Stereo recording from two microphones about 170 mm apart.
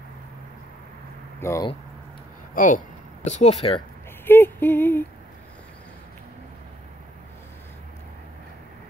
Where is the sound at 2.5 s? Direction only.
50° left (ahead or behind).